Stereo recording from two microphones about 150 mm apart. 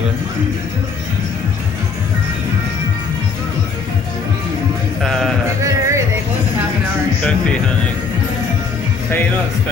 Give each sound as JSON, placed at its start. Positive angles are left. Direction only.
{"t": 5.0, "sound": "music", "side_deg": 5}
{"t": 5.6, "sound": "music", "side_deg": -20}